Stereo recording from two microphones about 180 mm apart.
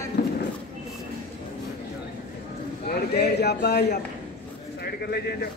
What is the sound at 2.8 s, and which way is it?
A man's voice, 65° left (ahead or behind).